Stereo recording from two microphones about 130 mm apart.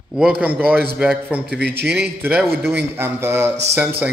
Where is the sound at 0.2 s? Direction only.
10° right (ahead or behind).